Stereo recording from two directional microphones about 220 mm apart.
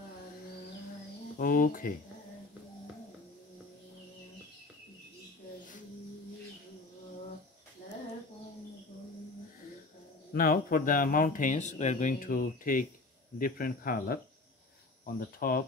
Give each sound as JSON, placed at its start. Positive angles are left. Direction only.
{"t": 1.4, "sound": "speech", "side_deg": 40}
{"t": 10.3, "sound": "speech", "side_deg": 40}